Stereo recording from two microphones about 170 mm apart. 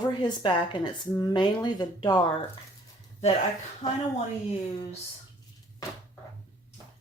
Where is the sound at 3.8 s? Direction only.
40° left (ahead or behind).